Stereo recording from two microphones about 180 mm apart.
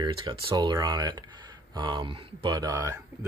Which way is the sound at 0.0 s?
25° right (ahead or behind).